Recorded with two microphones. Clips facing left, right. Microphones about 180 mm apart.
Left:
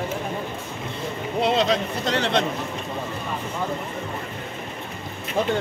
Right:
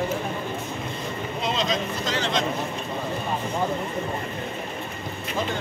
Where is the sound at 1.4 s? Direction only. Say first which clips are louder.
Left 6 dB; 65° left (ahead or behind).